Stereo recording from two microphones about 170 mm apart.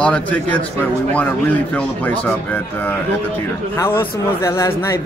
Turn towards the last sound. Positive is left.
turn(degrees=15)  # may be behind; listen again after turning